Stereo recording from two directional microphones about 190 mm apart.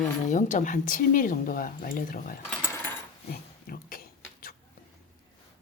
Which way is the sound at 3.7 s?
50° left (ahead or behind).